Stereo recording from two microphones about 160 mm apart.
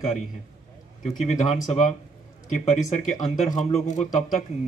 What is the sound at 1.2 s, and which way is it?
Speech, 45° left (ahead or behind).